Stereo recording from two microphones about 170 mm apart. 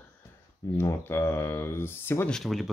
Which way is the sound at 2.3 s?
Centre (ahead or behind).